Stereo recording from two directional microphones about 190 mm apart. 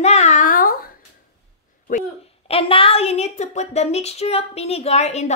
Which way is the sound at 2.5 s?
30° left (ahead or behind).